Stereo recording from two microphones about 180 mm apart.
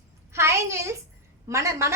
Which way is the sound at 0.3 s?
15° right (ahead or behind).